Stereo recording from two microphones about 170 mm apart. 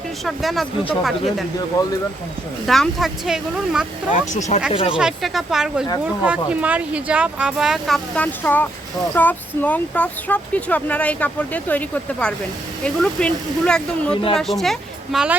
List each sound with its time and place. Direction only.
0.3 s speech: centre (ahead or behind)
2.6 s speech: centre (ahead or behind)
4.4 s speech: 45° left (ahead or behind)
4.9 s speech: 5° right (ahead or behind)